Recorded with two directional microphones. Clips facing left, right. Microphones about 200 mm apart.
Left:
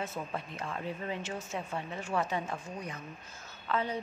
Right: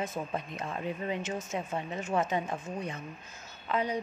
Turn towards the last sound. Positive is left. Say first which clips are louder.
# right 2 dB
turn(degrees=-15)  # may be behind; listen again after turning